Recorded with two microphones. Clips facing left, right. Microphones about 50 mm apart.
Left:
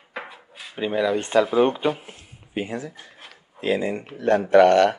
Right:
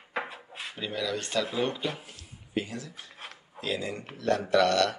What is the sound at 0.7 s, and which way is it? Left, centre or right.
Speech, left.